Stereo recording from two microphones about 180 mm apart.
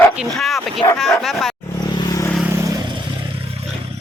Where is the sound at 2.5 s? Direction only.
15° right (ahead or behind).